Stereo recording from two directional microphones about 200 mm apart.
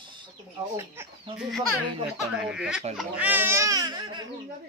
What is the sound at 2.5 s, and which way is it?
Speech, 5° right (ahead or behind).